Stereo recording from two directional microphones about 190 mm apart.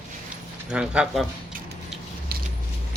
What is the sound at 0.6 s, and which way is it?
Speech, 5° right (ahead or behind).